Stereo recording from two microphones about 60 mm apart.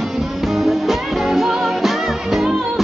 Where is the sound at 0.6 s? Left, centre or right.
Centre.